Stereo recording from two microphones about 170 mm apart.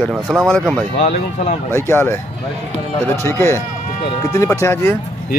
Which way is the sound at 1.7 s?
15° left (ahead or behind).